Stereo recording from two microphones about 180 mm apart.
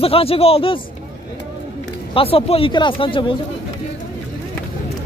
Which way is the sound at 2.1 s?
30° left (ahead or behind).